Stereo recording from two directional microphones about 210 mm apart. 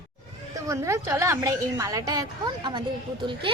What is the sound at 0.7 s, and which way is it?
A woman's voice, 15° right (ahead or behind).